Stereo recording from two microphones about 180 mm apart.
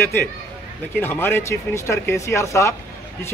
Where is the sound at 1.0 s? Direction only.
10° left (ahead or behind).